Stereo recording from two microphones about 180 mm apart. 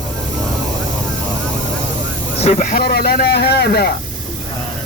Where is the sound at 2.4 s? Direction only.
45° left (ahead or behind); by 3.9 s 60° left (ahead or behind).